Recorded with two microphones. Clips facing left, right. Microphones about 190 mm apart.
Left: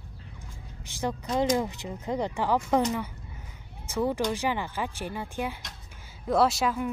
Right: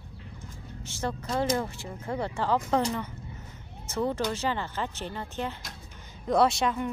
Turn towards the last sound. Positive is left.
turn(degrees=5)  # may be behind; listen again after turning